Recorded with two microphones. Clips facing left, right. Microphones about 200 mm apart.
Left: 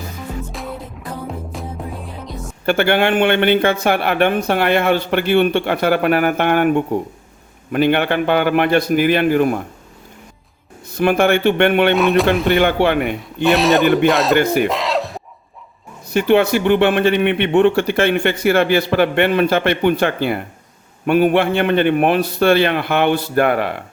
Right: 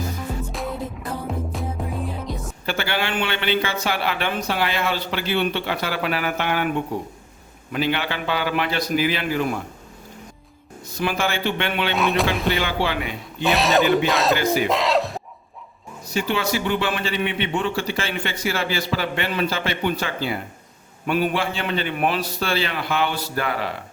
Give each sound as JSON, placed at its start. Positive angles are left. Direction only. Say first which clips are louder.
{"t": 0.5, "sound": "music", "louder": "even", "side_deg": 0}
{"t": 2.6, "sound": "a man's voice", "louder": "left 10 dB", "side_deg": 55}
{"t": 10.9, "sound": "a man's voice", "louder": "left 10 dB", "side_deg": 55}
{"t": 11.9, "sound": "speech", "louder": "left 7 dB", "side_deg": 0}
{"t": 12.5, "sound": "a man's voice", "louder": "left 8 dB", "side_deg": 55}
{"t": 13.4, "sound": "speech", "louder": "left 5 dB", "side_deg": 0}
{"t": 14.3, "sound": "a man's voice", "louder": "left 6 dB", "side_deg": 55}
{"t": 14.7, "sound": "a sound", "louder": "even", "side_deg": 0}
{"t": 16.0, "sound": "a man's voice", "louder": "left 10 dB", "side_deg": 60}